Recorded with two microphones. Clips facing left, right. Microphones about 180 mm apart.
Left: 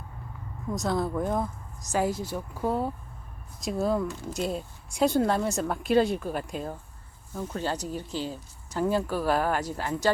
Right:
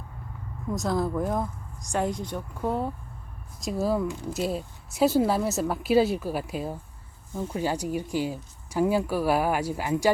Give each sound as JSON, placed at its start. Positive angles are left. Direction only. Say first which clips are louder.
{"t": 0.7, "sound": "speech", "louder": "right 1 dB", "side_deg": 0}
{"t": 4.1, "sound": "speech", "louder": "right 3 dB", "side_deg": -15}
{"t": 4.4, "sound": "speech", "louder": "even", "side_deg": -5}